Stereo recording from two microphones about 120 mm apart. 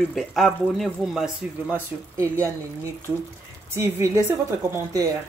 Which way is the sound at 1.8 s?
25° right (ahead or behind).